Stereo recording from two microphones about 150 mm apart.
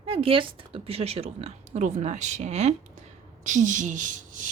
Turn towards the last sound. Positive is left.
turn(degrees=-55)  # may be behind; listen again after turning